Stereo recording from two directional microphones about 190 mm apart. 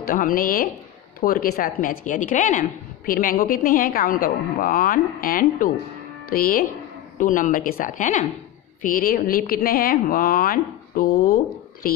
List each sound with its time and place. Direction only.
0.0 s a woman's voice: 50° left (ahead or behind)